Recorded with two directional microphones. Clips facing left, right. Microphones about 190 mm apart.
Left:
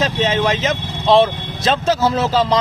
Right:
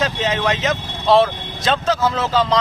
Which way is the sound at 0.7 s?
5° right (ahead or behind).